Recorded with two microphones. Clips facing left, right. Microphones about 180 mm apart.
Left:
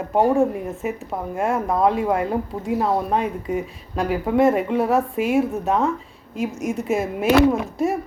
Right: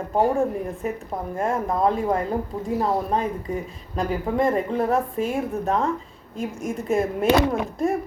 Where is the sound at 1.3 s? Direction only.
10° left (ahead or behind).